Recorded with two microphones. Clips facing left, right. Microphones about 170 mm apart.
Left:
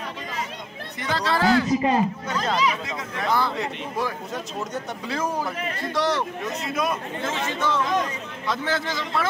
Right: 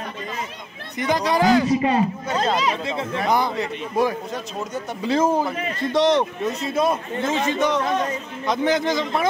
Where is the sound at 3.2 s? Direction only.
15° right (ahead or behind).